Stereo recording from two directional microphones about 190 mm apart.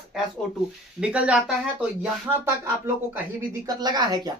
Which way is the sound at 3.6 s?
20° right (ahead or behind).